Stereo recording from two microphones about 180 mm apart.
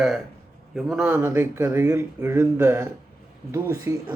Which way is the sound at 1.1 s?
15° right (ahead or behind).